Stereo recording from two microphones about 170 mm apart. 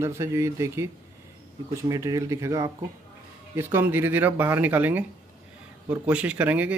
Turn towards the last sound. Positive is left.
turn(degrees=-10)  # may be behind; listen again after turning